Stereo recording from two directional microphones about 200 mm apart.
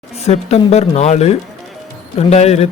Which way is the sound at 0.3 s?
30° left (ahead or behind).